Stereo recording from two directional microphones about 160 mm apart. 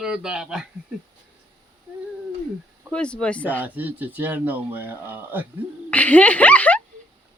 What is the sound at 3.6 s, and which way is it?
Speech, 10° right (ahead or behind).